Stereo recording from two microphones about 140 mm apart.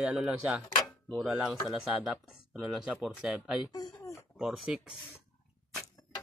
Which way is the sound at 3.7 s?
25° left (ahead or behind).